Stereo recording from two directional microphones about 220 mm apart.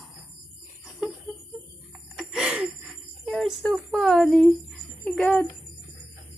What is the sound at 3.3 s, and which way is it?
A woman's voice, centre (ahead or behind).